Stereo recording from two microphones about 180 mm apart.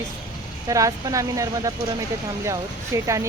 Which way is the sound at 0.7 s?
20° right (ahead or behind).